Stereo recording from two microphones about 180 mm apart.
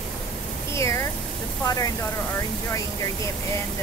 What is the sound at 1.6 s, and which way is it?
Speech, 20° left (ahead or behind).